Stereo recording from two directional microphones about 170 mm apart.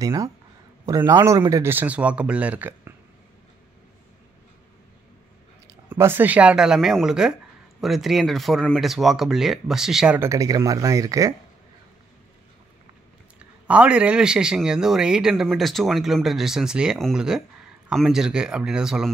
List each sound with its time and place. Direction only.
0.0 s speech: 20° right (ahead or behind)
5.7 s a man's voice: 15° right (ahead or behind)
13.7 s a man's voice: 5° right (ahead or behind)